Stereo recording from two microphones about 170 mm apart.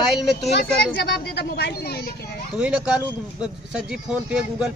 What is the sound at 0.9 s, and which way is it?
Speech, 75° left (ahead or behind).